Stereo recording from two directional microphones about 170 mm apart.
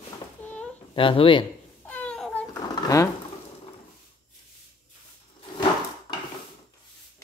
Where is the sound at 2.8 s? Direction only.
20° left (ahead or behind).